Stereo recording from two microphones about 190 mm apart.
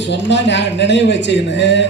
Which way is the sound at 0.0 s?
65° left (ahead or behind).